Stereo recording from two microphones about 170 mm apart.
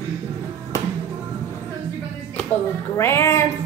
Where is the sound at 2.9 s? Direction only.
15° left (ahead or behind).